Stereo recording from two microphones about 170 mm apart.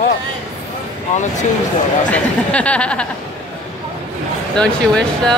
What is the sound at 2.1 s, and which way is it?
Speech, 5° left (ahead or behind).